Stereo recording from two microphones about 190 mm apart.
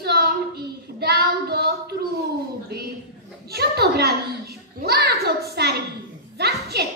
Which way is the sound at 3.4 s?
55° right (ahead or behind).